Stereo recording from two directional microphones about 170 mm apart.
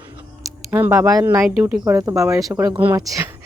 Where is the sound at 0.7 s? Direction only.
10° right (ahead or behind).